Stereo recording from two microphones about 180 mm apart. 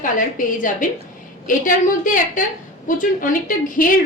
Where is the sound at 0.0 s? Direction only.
50° left (ahead or behind).